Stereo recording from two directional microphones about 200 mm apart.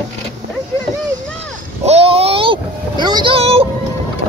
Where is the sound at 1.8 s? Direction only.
30° right (ahead or behind).